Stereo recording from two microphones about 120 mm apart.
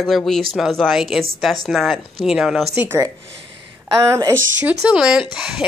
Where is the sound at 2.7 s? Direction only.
20° right (ahead or behind).